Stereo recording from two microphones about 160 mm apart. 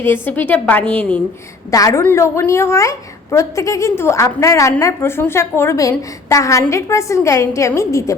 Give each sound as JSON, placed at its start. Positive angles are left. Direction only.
{"t": 0.0, "sound": "a woman's voice", "side_deg": 15}